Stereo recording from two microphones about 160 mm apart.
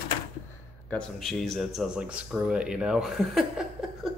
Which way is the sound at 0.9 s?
5° left (ahead or behind).